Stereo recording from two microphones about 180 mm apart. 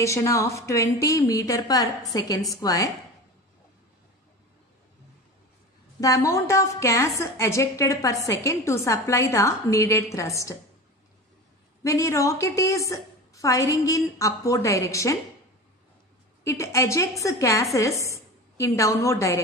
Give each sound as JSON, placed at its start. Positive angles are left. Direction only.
{"t": 0.0, "sound": "a woman's voice", "side_deg": 15}
{"t": 5.9, "sound": "a woman's voice", "side_deg": 20}
{"t": 11.8, "sound": "a woman's voice", "side_deg": 15}
{"t": 16.4, "sound": "a woman's voice", "side_deg": 15}